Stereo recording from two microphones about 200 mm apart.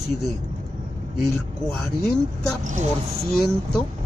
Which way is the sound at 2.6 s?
40° right (ahead or behind).